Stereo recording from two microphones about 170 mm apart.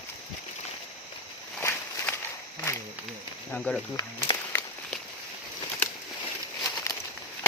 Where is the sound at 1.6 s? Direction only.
15° left (ahead or behind).